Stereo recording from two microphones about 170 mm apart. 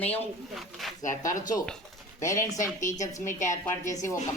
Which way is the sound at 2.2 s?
20° left (ahead or behind).